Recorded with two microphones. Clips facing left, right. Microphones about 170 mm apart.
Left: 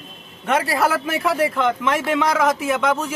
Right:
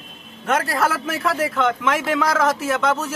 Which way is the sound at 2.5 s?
Centre (ahead or behind).